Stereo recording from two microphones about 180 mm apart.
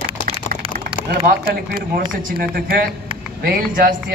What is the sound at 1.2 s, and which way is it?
Speech, 50° right (ahead or behind).